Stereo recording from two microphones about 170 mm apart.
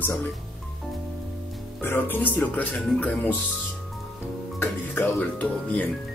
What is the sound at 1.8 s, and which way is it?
Speech, 10° left (ahead or behind).